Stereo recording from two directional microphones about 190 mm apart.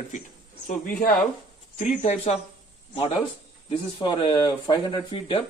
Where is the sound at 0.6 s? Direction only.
45° left (ahead or behind).